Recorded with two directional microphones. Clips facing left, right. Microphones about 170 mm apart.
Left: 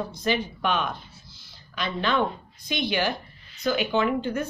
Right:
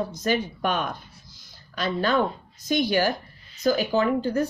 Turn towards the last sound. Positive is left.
turn(degrees=-35)  # may be behind; listen again after turning